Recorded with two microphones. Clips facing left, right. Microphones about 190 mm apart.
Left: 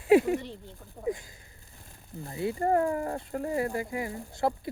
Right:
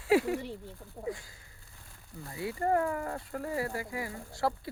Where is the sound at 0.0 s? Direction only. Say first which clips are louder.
Left 5 dB; 20° left (ahead or behind).